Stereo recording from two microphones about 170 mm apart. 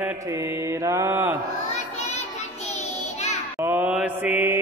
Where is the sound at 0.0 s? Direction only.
15° right (ahead or behind).